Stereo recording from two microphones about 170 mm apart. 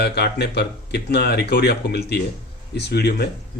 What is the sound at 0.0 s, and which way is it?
Speech, 75° left (ahead or behind).